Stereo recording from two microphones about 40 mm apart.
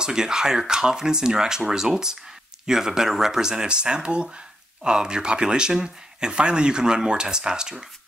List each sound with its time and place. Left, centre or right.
0.0 s speech: centre